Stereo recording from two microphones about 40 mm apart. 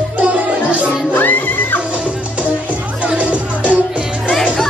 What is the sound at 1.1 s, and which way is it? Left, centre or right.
Music, left.